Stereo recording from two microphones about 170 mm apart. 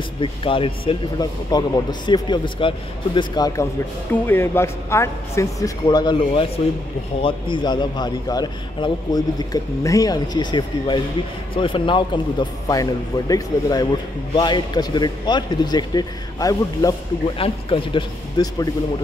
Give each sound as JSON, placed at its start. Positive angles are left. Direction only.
{"t": 0.2, "sound": "a man's voice", "side_deg": 30}
{"t": 17.4, "sound": "speech", "side_deg": 30}